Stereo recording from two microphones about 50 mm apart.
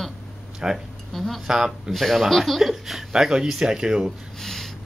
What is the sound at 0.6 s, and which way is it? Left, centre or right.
Speech, centre.